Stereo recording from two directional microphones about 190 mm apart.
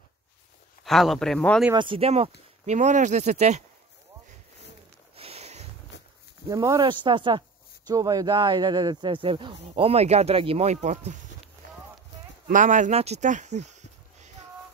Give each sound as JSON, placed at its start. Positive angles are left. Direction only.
{"t": 0.8, "sound": "speech", "side_deg": 0}
{"t": 1.7, "sound": "speech", "side_deg": -25}
{"t": 5.1, "sound": "a sound", "side_deg": -30}
{"t": 5.9, "sound": "walk", "side_deg": 65}
{"t": 6.5, "sound": "speech", "side_deg": -15}
{"t": 12.4, "sound": "speech", "side_deg": -45}